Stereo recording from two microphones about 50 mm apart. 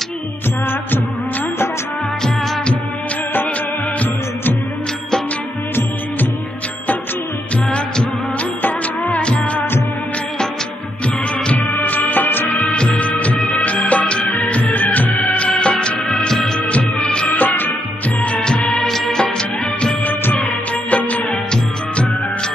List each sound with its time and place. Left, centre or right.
8.6 s music: left
9.2 s music: left
11.5 s music: left
12.6 s music: centre
16.6 s music: left
17.4 s music: left
18.2 s music: left
18.8 s music: centre
20.1 s music of bollywood: left